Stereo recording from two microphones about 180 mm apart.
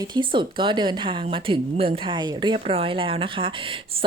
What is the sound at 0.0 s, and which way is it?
Speech, 25° right (ahead or behind).